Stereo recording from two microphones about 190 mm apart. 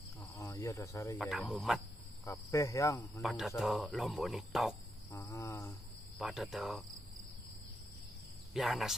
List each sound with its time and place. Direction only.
0.2 s cricket: 15° left (ahead or behind)
1.1 s speech: centre (ahead or behind)
2.2 s speech: 15° left (ahead or behind)
3.2 s speech: centre (ahead or behind)
5.1 s speech: 15° left (ahead or behind)
6.1 s speech: centre (ahead or behind)
8.5 s speech: centre (ahead or behind)